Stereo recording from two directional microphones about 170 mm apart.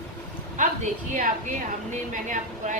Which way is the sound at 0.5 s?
50° right (ahead or behind).